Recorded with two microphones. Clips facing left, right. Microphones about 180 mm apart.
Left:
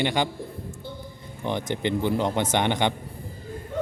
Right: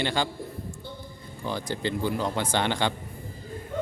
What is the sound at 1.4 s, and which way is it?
A man's voice, 20° left (ahead or behind).